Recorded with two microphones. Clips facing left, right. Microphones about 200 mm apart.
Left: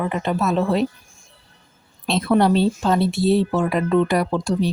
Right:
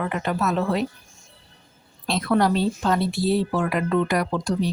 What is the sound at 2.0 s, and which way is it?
Speech, 25° left (ahead or behind).